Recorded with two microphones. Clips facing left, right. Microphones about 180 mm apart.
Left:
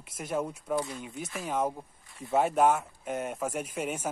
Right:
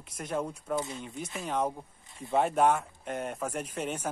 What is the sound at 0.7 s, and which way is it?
Speech, 25° right (ahead or behind).